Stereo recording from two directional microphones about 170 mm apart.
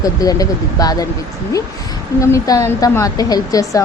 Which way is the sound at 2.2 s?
20° left (ahead or behind).